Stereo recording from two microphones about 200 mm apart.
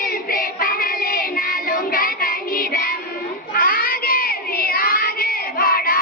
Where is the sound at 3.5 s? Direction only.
45° left (ahead or behind).